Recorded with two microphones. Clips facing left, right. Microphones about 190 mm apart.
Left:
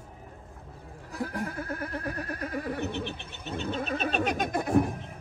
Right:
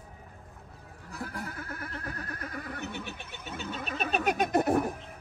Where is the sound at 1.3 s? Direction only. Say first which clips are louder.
Left 6 dB; 35° left (ahead or behind).